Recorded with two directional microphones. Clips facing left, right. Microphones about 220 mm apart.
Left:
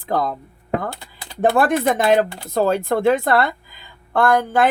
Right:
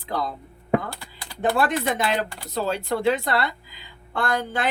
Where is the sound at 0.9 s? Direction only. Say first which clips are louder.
Left 5 dB; 20° left (ahead or behind).